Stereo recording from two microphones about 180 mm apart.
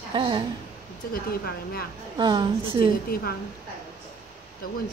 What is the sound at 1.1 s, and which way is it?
Speech, 55° left (ahead or behind).